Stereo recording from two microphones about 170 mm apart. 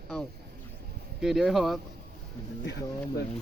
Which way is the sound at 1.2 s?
Centre (ahead or behind).